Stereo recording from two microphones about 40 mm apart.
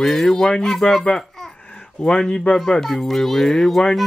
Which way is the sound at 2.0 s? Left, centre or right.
Centre.